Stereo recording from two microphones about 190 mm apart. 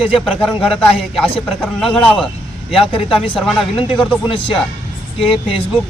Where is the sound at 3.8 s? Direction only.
25° left (ahead or behind).